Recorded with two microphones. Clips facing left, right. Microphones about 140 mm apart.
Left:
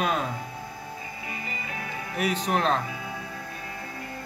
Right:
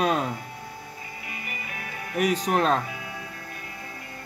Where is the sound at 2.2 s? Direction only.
40° right (ahead or behind).